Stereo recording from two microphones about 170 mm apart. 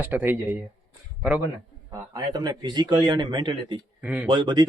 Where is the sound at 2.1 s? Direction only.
25° right (ahead or behind).